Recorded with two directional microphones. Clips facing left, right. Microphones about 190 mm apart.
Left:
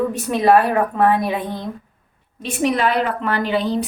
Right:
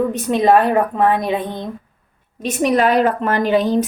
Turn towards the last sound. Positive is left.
turn(degrees=-45)  # may be behind; listen again after turning